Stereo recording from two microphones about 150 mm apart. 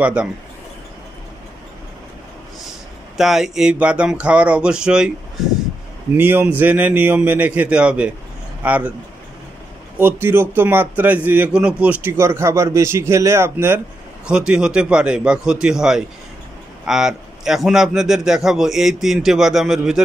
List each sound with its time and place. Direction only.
0.0 s speech: 5° right (ahead or behind)
3.2 s a man's voice: 5° right (ahead or behind)
6.1 s speech: 15° right (ahead or behind)
10.2 s a man's voice: 15° right (ahead or behind)